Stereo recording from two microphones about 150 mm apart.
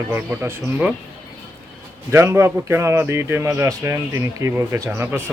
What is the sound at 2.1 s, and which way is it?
Speech, 20° right (ahead or behind).